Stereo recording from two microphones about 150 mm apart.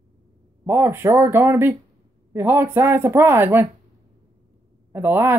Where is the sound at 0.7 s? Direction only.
15° right (ahead or behind).